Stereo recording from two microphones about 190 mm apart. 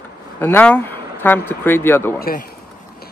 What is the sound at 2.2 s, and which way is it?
Speech, 50° left (ahead or behind).